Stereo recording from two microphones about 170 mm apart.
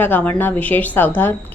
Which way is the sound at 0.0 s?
10° left (ahead or behind).